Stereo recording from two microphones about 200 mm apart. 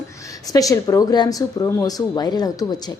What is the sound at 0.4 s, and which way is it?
A woman's voice, 15° left (ahead or behind).